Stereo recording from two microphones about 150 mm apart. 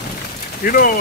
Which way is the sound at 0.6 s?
80° left.